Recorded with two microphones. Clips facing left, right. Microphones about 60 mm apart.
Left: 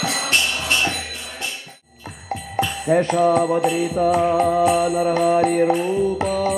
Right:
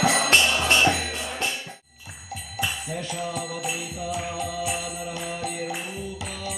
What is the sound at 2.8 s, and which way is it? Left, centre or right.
Music, left.